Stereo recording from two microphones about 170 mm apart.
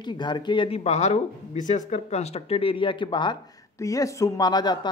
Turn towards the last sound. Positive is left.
turn(degrees=25)  # may be behind; listen again after turning